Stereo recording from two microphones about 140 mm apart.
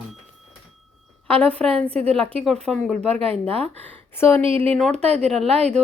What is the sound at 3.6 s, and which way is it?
Speech, 15° left (ahead or behind).